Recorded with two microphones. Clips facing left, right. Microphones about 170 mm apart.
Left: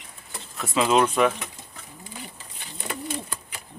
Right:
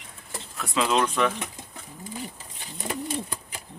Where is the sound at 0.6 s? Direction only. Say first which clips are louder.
Left 3 dB; 5° left (ahead or behind).